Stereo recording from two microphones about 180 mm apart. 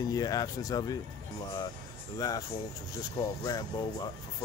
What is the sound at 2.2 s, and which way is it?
Speech, 20° left (ahead or behind).